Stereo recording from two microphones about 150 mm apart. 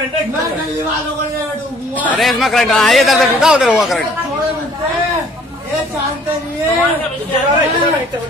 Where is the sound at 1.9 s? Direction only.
10° left (ahead or behind).